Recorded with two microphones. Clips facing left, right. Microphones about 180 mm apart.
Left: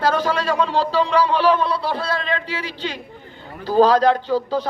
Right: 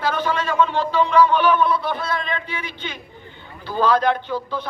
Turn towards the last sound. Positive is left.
turn(degrees=40)  # may be behind; listen again after turning